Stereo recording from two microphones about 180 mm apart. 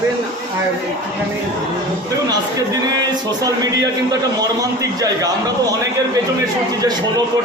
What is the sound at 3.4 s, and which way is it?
A man's voice, 20° right (ahead or behind).